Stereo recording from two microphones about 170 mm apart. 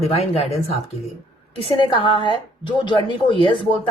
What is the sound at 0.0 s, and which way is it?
A woman's voice, 40° left (ahead or behind).